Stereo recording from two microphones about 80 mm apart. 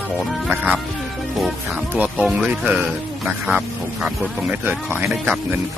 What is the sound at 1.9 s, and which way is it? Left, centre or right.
Speech, right.